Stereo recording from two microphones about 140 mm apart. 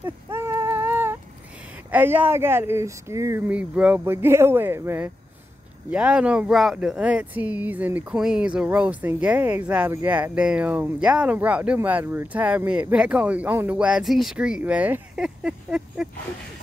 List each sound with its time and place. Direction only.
0.0 s a sound: 20° right (ahead or behind)
1.9 s speech: 15° right (ahead or behind)
3.4 s speech: 10° right (ahead or behind)